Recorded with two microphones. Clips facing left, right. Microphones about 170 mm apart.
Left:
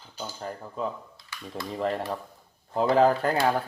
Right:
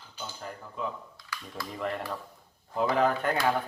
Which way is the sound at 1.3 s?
25° left (ahead or behind).